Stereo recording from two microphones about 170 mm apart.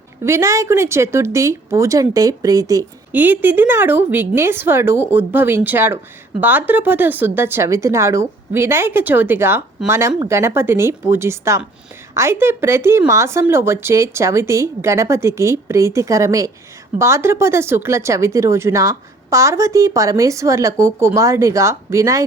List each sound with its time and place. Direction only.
0.3 s speech: 15° right (ahead or behind)